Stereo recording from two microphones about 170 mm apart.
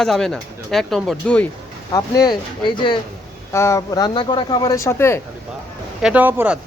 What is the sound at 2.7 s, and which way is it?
Speech, 30° left (ahead or behind).